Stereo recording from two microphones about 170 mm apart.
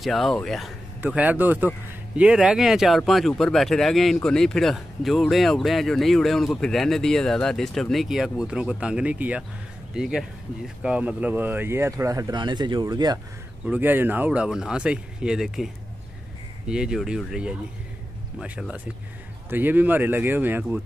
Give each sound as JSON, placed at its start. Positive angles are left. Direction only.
{"t": 0.0, "sound": "speech", "side_deg": 0}
{"t": 13.7, "sound": "speech", "side_deg": -10}